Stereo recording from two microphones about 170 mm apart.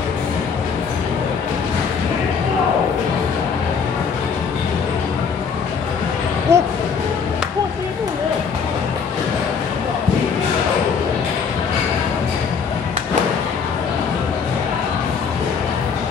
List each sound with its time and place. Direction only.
6.5 s music: 15° right (ahead or behind)